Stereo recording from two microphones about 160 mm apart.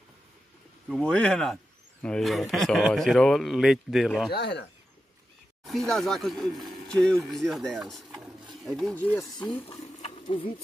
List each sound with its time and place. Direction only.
0.8 s speech: 5° left (ahead or behind)
4.3 s speech: 90° left
5.7 s speech: centre (ahead or behind)
9.7 s sewing machine: 40° left (ahead or behind)